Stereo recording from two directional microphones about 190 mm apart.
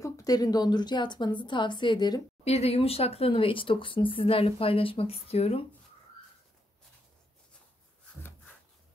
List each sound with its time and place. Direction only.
0.0 s a woman's voice: 20° left (ahead or behind)
2.4 s speech: 35° left (ahead or behind)